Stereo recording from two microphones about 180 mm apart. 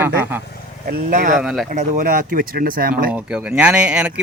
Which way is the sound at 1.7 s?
45° right (ahead or behind).